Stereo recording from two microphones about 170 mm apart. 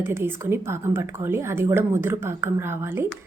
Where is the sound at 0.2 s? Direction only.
15° right (ahead or behind).